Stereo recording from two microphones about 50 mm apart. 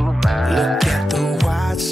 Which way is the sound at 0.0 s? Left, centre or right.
Centre.